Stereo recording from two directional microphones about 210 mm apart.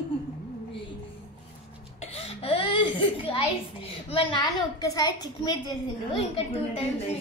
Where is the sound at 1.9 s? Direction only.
30° left (ahead or behind).